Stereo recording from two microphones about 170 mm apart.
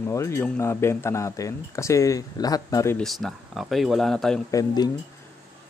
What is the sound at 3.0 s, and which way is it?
Speech, centre (ahead or behind).